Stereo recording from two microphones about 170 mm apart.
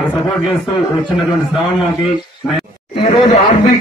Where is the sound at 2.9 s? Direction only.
35° left (ahead or behind).